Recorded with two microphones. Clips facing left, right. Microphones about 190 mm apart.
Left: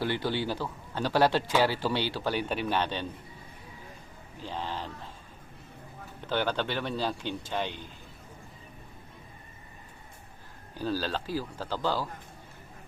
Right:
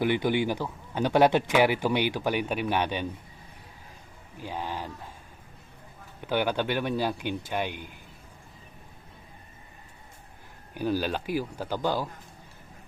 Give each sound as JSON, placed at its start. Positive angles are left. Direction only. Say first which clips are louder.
{"t": 0.0, "sound": "speech", "louder": "right 5 dB", "side_deg": -15}
{"t": 4.4, "sound": "speech", "louder": "right 2 dB", "side_deg": -10}
{"t": 6.2, "sound": "speech", "louder": "right 3 dB", "side_deg": -10}
{"t": 10.8, "sound": "speech", "louder": "right 3 dB", "side_deg": -15}